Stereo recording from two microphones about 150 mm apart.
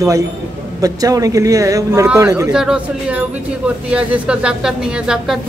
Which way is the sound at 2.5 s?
5° right (ahead or behind).